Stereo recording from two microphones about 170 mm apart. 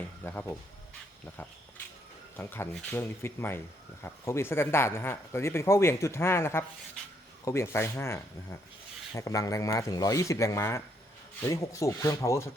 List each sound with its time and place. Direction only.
0.3 s speech: 15° left (ahead or behind)
2.3 s speech: 10° left (ahead or behind)